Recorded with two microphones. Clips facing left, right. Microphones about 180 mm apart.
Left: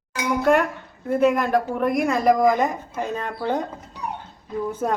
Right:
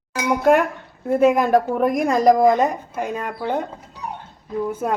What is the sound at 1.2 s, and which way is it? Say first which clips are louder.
Speech: right 4 dB; 45° right (ahead or behind).